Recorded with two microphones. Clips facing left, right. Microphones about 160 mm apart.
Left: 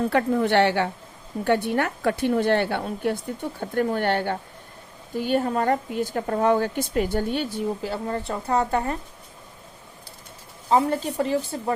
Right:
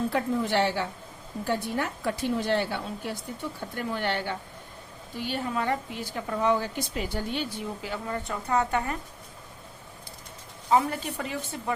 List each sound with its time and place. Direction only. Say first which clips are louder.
0.1 s a woman's voice: left 6 dB; 65° left (ahead or behind); by 9.0 s 30° left (ahead or behind)
10.7 s a woman's voice: left 3 dB; 30° left (ahead or behind)